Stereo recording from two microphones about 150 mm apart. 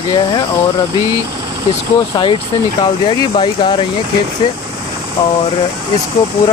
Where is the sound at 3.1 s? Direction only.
35° left (ahead or behind).